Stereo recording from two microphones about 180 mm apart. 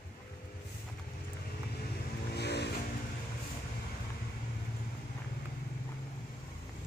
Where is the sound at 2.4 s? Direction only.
65° left (ahead or behind).